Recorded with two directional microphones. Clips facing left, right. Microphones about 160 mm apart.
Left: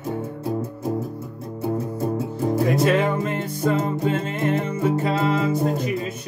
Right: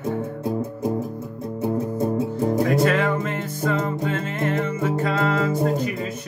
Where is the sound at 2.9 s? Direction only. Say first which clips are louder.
Left 1 dB; 25° left (ahead or behind).